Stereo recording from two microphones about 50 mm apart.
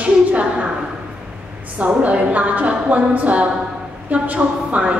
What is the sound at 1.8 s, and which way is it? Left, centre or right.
A woman's voice, right.